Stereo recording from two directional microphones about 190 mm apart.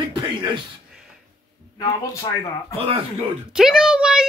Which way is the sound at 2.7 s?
30° right (ahead or behind).